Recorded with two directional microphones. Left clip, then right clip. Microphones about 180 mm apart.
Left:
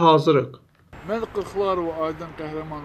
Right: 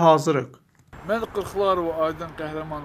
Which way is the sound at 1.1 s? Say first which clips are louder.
Right 1 dB; 10° right (ahead or behind).